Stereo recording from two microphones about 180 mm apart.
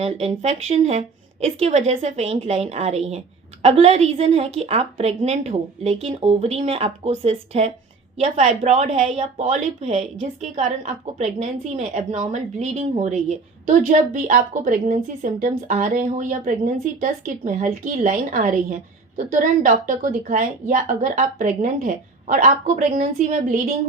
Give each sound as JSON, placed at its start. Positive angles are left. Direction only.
{"t": 0.0, "sound": "a woman's voice", "side_deg": -35}